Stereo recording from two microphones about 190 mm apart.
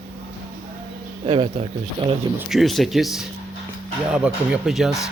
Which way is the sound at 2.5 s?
Centre (ahead or behind).